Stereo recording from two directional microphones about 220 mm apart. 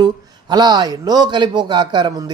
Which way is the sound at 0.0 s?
20° right (ahead or behind).